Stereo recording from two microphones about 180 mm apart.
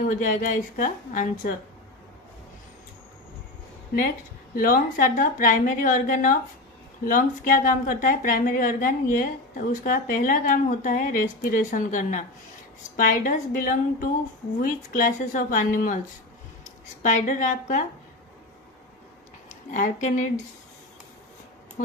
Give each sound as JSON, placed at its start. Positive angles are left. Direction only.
{"t": 0.0, "sound": "a woman's voice", "side_deg": 45}
{"t": 4.6, "sound": "a woman's voice", "side_deg": 50}
{"t": 17.0, "sound": "a woman's voice", "side_deg": 40}
{"t": 19.5, "sound": "speech", "side_deg": 45}
{"t": 21.8, "sound": "speech", "side_deg": 45}